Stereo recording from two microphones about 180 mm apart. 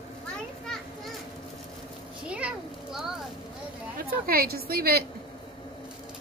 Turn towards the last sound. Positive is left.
turn(degrees=-60)  # may be behind; listen again after turning